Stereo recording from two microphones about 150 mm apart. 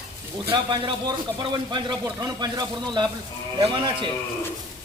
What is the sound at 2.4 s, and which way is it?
Speech, 30° right (ahead or behind).